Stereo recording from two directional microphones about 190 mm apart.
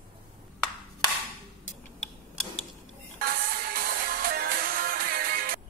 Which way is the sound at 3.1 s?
50° right (ahead or behind).